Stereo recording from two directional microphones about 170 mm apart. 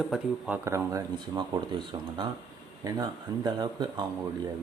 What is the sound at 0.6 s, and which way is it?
A man's voice, 15° right (ahead or behind).